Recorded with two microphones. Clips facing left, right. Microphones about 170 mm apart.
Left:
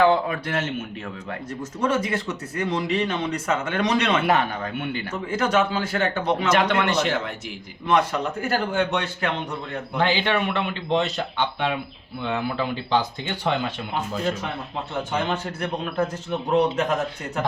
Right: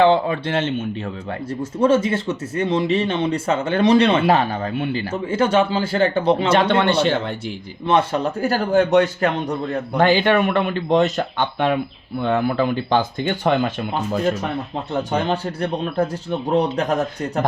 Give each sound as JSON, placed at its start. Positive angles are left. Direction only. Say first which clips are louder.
{"t": 0.0, "sound": "a man's voice", "louder": "right 4 dB", "side_deg": -25}
{"t": 15.1, "sound": "a man's voice", "louder": "right 3 dB", "side_deg": -35}